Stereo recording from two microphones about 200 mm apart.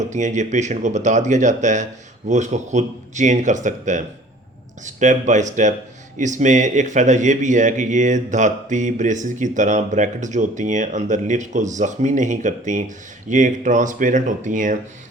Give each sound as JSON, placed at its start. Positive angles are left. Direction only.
{"t": 0.0, "sound": "a man's voice", "side_deg": -35}